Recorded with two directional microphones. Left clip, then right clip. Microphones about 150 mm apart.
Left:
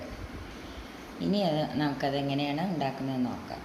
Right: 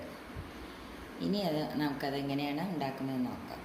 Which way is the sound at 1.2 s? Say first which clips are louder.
Left 5 dB; 45° left (ahead or behind).